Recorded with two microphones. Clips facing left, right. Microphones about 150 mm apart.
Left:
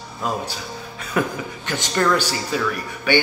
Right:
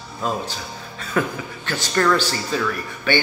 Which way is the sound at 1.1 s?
15° left (ahead or behind).